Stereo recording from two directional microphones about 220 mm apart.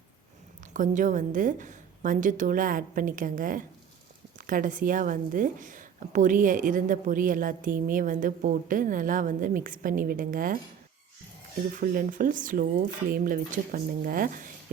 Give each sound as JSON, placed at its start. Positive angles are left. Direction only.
{"t": 0.7, "sound": "a woman's voice", "side_deg": -35}
{"t": 11.8, "sound": "a woman's voice", "side_deg": -40}